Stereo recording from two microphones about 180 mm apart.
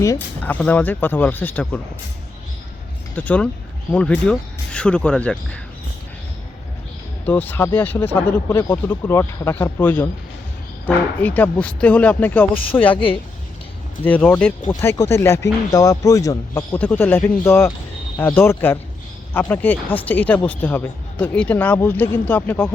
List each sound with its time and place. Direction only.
0.0 s speech: 15° left (ahead or behind)
3.2 s speech: 10° left (ahead or behind)
7.3 s speech: 10° left (ahead or behind)
14.0 s speech: 10° left (ahead or behind)